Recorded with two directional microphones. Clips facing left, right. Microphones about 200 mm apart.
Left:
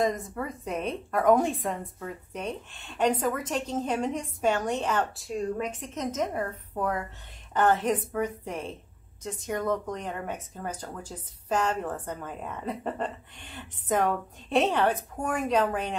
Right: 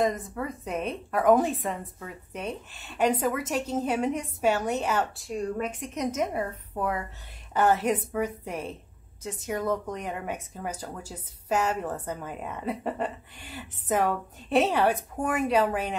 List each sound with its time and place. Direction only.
0.0 s speech: centre (ahead or behind)